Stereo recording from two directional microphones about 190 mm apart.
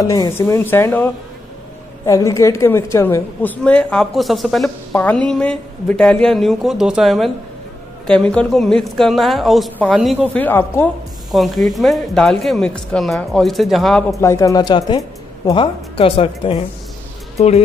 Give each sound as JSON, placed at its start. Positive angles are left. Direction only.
{"t": 0.0, "sound": "a woman's voice", "side_deg": 20}
{"t": 10.3, "sound": "a woman's voice", "side_deg": 10}
{"t": 14.2, "sound": "speech", "side_deg": 15}